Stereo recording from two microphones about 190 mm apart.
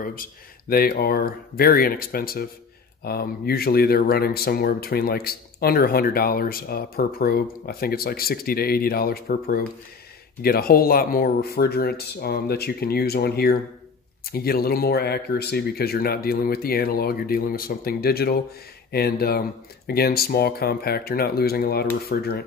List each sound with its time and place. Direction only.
0.0 s speech: 45° left (ahead or behind)